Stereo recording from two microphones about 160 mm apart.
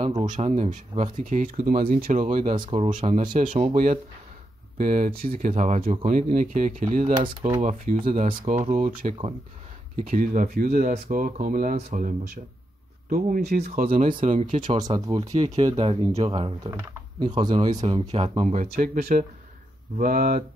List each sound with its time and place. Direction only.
0.3 s speech: 45° right (ahead or behind); by 2.2 s 60° right (ahead or behind)
2.2 s speech: 40° right (ahead or behind)
2.9 s speech: 50° right (ahead or behind)
5.5 s speech: 50° right (ahead or behind)
7.2 s speech: 30° right (ahead or behind)
7.6 s speech: 45° right (ahead or behind)
8.1 s speech: 55° right (ahead or behind)
13.1 s speech: 75° right (ahead or behind)
13.7 s speech: 55° right (ahead or behind)
14.8 s speech: 25° right (ahead or behind)
18.6 s speech: 65° right (ahead or behind)